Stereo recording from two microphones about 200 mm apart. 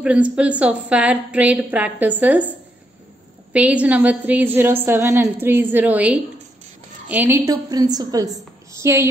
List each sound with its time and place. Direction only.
0.0 s a woman's voice: 5° right (ahead or behind)
3.5 s a woman's voice: 5° right (ahead or behind)